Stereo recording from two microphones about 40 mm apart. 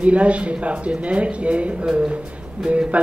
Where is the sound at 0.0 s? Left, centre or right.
Right.